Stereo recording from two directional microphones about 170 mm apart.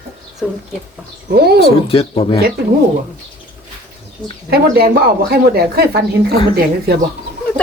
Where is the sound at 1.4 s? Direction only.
70° right (ahead or behind).